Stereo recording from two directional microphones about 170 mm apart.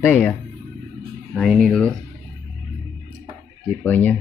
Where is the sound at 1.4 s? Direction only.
Centre (ahead or behind).